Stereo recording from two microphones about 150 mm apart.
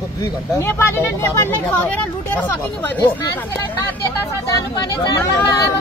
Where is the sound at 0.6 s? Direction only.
20° left (ahead or behind).